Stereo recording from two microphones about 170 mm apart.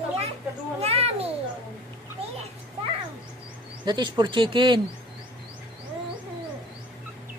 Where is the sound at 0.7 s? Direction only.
35° right (ahead or behind).